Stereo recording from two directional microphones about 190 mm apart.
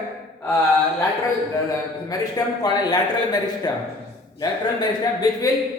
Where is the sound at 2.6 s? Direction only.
20° left (ahead or behind).